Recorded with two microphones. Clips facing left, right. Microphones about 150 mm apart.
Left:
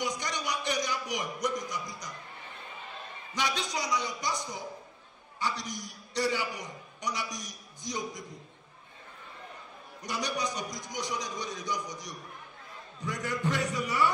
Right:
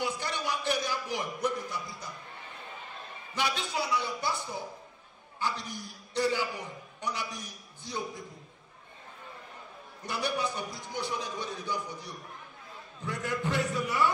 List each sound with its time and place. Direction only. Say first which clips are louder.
0.0 s a man's voice: right 1 dB; 15° left (ahead or behind)
3.3 s a man's voice: right 1 dB; 15° left (ahead or behind)
10.0 s a man's voice: right 1 dB; 15° left (ahead or behind)